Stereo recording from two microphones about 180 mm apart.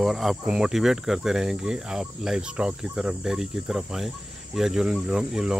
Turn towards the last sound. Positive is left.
turn(degrees=-5)  # may be behind; listen again after turning